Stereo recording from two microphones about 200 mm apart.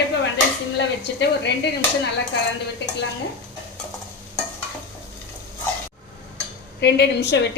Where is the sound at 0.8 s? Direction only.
60° left (ahead or behind).